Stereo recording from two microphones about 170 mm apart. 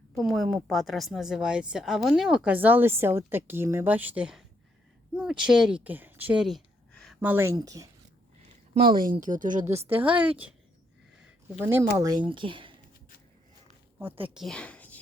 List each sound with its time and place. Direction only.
0.2 s a woman's voice: centre (ahead or behind)
7.2 s speech: 10° right (ahead or behind)
8.8 s speech: 55° right (ahead or behind)
9.8 s speech: 10° right (ahead or behind); by 12.7 s 30° right (ahead or behind)
14.3 s a sound: 5° left (ahead or behind)